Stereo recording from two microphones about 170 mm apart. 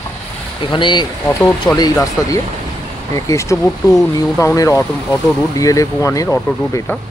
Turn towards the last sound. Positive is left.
turn(degrees=15)  # may be behind; listen again after turning